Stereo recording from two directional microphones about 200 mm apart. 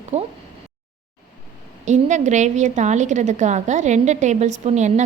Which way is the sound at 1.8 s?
35° right (ahead or behind).